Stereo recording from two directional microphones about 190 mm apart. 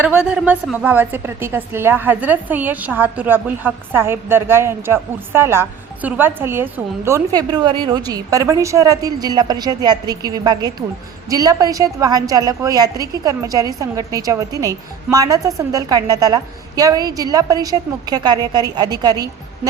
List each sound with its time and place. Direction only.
0.0 s a woman's voice: 5° right (ahead or behind)